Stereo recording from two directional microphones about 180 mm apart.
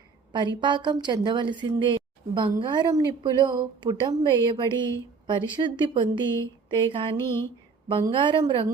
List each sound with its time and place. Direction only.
0.3 s speech: 25° right (ahead or behind)